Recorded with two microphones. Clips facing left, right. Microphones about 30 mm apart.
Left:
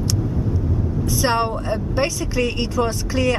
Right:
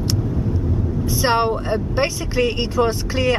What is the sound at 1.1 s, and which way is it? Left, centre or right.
Speech, centre.